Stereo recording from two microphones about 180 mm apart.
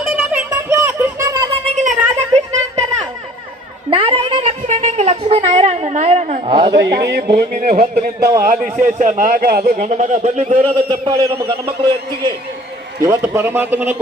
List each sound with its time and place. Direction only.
0.0 s a sound: 5° right (ahead or behind)
1.6 s a sound: 40° right (ahead or behind)
6.5 s a woman's voice: 25° right (ahead or behind)
6.7 s a man's voice: 70° right (ahead or behind)
7.3 s a man's voice: 50° right (ahead or behind)
9.6 s a man's voice: 40° right (ahead or behind)
13.0 s a man's voice: 15° right (ahead or behind)